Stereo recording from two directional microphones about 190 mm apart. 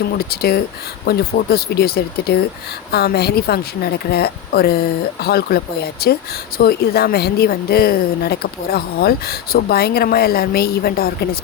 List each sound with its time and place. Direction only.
0.2 s speech: 55° left (ahead or behind)